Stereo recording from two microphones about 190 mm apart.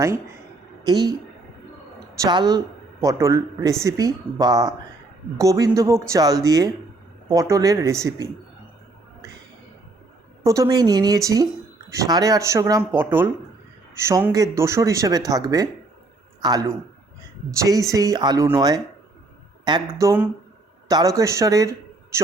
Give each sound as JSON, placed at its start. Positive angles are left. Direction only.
{"t": 0.9, "sound": "speech", "side_deg": -20}
{"t": 2.2, "sound": "speech", "side_deg": -20}
{"t": 10.4, "sound": "speech", "side_deg": -15}
{"t": 17.9, "sound": "a man's voice", "side_deg": -20}